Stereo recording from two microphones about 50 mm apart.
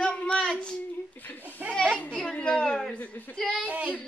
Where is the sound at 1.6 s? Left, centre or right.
Right.